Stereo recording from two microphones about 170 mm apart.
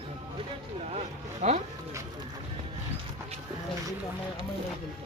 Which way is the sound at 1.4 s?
40° right (ahead or behind).